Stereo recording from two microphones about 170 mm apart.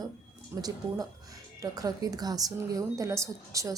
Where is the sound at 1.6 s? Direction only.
20° right (ahead or behind).